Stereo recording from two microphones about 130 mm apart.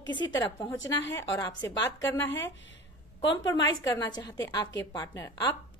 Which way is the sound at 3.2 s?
35° left (ahead or behind).